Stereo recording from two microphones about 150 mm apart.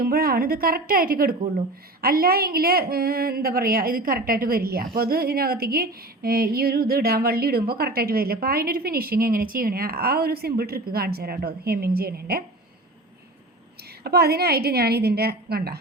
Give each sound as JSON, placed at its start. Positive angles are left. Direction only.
{"t": 0.0, "sound": "a woman's voice", "side_deg": -90}
{"t": 14.0, "sound": "speech", "side_deg": -90}